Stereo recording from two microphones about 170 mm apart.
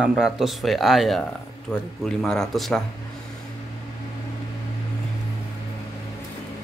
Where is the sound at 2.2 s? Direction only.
5° left (ahead or behind).